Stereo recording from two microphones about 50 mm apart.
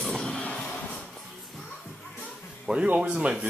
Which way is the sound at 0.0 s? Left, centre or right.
Centre.